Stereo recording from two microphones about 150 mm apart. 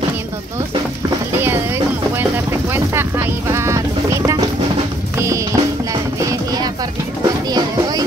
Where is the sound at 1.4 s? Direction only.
15° right (ahead or behind).